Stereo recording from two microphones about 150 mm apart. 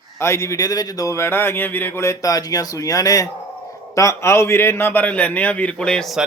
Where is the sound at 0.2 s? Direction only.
20° left (ahead or behind).